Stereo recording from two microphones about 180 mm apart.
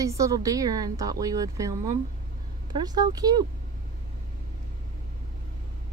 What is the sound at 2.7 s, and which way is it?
Speech, 20° right (ahead or behind).